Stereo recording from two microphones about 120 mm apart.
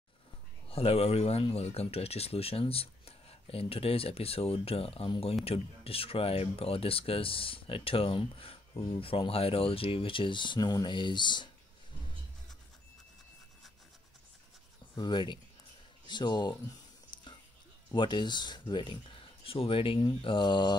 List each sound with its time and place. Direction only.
0.7 s speech: 55° left (ahead or behind); by 11.5 s 40° left (ahead or behind)
15.0 s mantra: 40° left (ahead or behind)
17.1 s music: 40° left (ahead or behind)
17.9 s speech: 40° left (ahead or behind)
20.2 s mantra: 45° left (ahead or behind)